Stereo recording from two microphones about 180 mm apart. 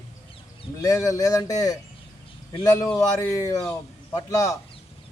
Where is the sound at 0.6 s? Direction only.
20° left (ahead or behind).